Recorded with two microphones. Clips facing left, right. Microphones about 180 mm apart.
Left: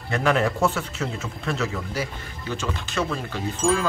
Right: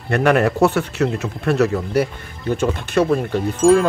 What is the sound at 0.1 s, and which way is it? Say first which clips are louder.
Speech: right 6 dB; 65° right (ahead or behind).